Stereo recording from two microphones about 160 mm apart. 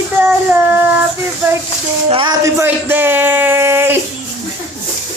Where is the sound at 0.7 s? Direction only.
10° right (ahead or behind).